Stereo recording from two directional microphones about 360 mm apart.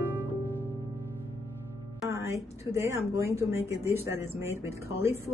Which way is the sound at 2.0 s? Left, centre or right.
Centre.